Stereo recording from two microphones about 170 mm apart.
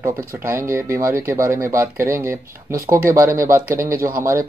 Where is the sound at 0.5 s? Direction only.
15° right (ahead or behind).